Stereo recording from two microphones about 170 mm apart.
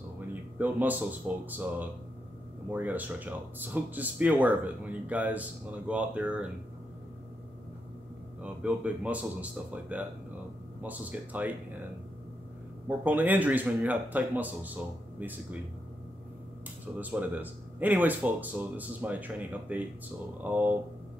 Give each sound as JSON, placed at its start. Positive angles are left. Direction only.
{"t": 0.3, "sound": "speech", "side_deg": -10}
{"t": 8.4, "sound": "speech", "side_deg": -5}
{"t": 12.8, "sound": "speech", "side_deg": -10}
{"t": 16.8, "sound": "speech", "side_deg": -10}